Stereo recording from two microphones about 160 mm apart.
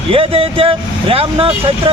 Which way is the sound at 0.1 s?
35° right (ahead or behind).